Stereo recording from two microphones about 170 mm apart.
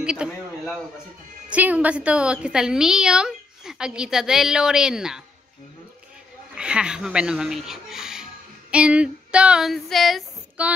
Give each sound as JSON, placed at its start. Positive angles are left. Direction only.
{"t": 0.0, "sound": "a sound", "side_deg": -5}
{"t": 1.5, "sound": "a woman's voice", "side_deg": -10}
{"t": 6.5, "sound": "speech", "side_deg": -5}